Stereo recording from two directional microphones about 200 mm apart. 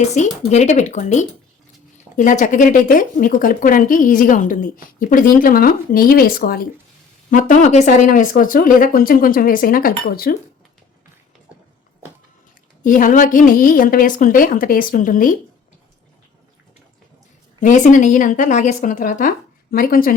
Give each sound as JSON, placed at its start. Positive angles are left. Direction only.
{"t": 0.0, "sound": "speech", "side_deg": 35}
{"t": 12.8, "sound": "speech", "side_deg": 40}
{"t": 17.6, "sound": "speech", "side_deg": 40}